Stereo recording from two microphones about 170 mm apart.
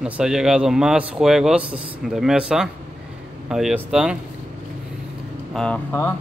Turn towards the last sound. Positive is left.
turn(degrees=10)  # may be behind; listen again after turning